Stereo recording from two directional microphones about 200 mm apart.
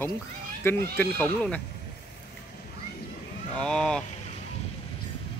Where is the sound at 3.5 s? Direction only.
5° left (ahead or behind).